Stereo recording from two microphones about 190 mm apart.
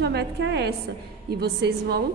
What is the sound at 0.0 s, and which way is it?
A woman's voice, 65° right (ahead or behind).